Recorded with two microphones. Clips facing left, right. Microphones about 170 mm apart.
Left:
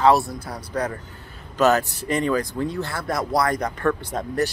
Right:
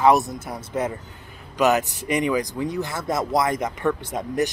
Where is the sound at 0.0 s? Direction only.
20° right (ahead or behind).